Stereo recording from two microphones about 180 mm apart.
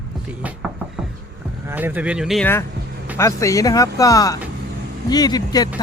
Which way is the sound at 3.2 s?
15° left (ahead or behind).